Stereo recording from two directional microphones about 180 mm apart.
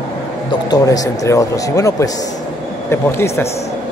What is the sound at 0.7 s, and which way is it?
Speech, 20° left (ahead or behind).